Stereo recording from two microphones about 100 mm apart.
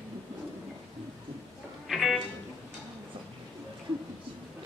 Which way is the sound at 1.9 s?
5° right (ahead or behind).